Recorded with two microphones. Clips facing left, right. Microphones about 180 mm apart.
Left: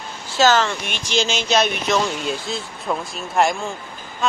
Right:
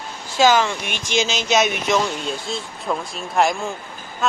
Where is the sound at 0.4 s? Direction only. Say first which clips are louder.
Right 1 dB; 10° right (ahead or behind).